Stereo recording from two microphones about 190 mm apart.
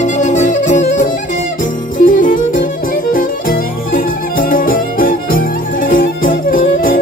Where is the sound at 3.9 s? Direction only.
45° left (ahead or behind).